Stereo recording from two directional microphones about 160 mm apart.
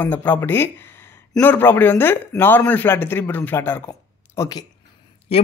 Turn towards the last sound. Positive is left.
turn(degrees=40)  # may be behind; listen again after turning